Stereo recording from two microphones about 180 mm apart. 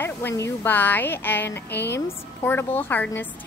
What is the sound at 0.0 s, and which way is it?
Speech, 15° left (ahead or behind).